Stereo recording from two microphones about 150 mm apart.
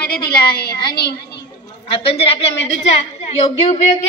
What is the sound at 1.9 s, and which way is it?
A woman's voice, 40° left (ahead or behind).